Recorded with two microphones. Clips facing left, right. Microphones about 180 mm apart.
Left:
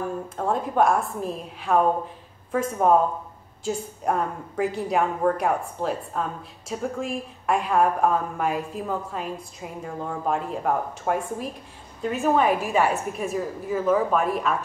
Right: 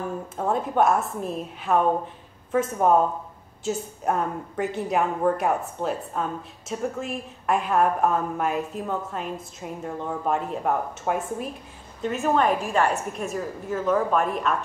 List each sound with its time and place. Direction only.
0.4 s a woman's voice: 5° right (ahead or behind)
2.8 s a woman's voice: centre (ahead or behind)